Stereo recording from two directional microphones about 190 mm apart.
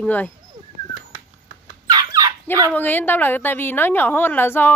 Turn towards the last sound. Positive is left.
turn(degrees=10)  # may be behind; listen again after turning